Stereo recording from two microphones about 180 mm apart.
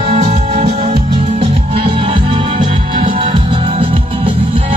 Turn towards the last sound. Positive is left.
turn(degrees=-30)  # may be behind; listen again after turning